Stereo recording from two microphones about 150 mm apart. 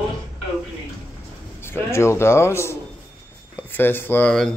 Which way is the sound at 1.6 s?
15° left (ahead or behind).